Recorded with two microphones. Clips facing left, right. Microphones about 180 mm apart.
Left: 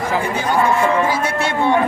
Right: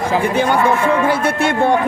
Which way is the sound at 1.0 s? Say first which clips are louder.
Right 3 dB; 60° right (ahead or behind).